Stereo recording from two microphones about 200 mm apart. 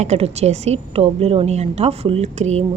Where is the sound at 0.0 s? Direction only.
30° right (ahead or behind).